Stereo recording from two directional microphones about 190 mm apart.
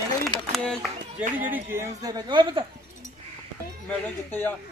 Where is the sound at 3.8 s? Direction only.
10° left (ahead or behind).